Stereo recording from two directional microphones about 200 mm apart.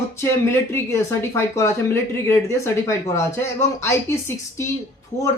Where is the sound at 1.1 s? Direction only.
15° left (ahead or behind).